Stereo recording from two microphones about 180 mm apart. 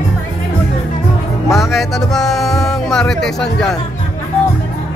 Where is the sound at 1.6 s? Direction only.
Centre (ahead or behind).